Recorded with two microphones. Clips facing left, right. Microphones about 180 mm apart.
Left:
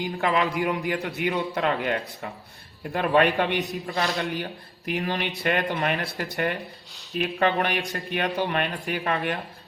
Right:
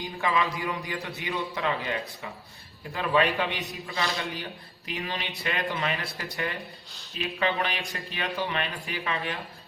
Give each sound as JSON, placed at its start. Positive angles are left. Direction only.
{"t": 0.2, "sound": "a man's voice", "side_deg": 65}